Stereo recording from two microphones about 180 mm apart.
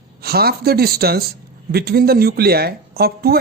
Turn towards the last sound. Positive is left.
turn(degrees=-60)  # may be behind; listen again after turning